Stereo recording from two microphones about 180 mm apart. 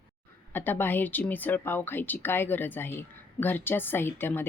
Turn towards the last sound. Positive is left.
turn(degrees=10)  # may be behind; listen again after turning